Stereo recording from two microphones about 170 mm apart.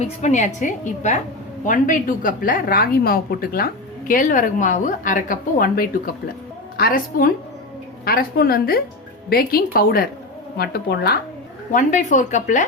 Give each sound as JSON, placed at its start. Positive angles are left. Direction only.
{"t": 0.0, "sound": "a woman's voice", "side_deg": 45}
{"t": 11.7, "sound": "a woman's voice", "side_deg": 50}